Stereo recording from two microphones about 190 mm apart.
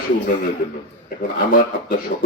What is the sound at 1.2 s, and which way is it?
Speech, 45° left (ahead or behind).